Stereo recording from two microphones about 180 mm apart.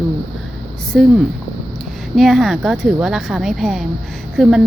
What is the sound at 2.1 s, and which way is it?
A woman's voice, centre (ahead or behind).